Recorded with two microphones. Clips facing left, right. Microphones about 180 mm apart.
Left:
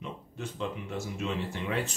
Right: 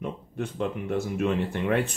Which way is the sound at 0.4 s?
55° right (ahead or behind).